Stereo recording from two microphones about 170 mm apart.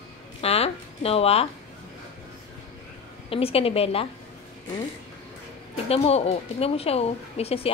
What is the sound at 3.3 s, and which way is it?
Speech, 35° left (ahead or behind).